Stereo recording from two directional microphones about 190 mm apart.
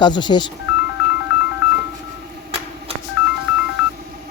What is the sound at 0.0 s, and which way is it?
Speech, 25° left (ahead or behind).